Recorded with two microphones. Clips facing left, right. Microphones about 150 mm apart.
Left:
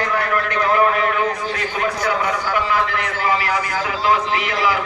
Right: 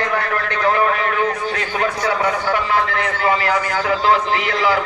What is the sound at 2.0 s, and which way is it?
A man's voice, 30° right (ahead or behind).